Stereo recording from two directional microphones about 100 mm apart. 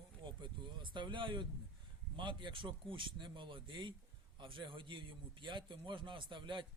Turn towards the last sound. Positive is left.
turn(degrees=-55)  # may be behind; listen again after turning